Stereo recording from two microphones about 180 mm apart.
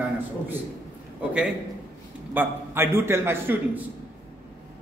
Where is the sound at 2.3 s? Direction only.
10° right (ahead or behind).